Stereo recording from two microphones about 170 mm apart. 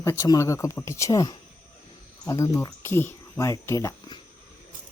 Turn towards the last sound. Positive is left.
turn(degrees=25)  # may be behind; listen again after turning